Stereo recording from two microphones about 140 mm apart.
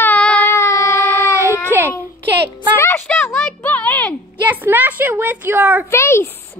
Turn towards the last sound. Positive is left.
turn(degrees=20)  # may be behind; listen again after turning